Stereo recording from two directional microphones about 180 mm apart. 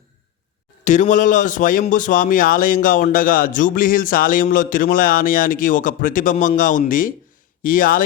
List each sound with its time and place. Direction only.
0.9 s a man's voice: 45° left (ahead or behind)